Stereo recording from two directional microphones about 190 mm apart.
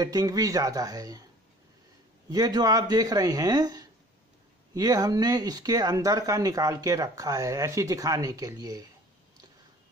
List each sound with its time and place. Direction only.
0.0 s speech: 20° right (ahead or behind)
2.2 s speech: 20° right (ahead or behind)